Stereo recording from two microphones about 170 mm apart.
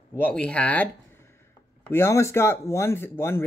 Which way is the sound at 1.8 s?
15° left (ahead or behind).